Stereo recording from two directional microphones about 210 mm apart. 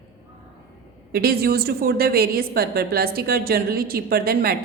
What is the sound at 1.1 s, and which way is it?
A woman's voice, 45° right (ahead or behind).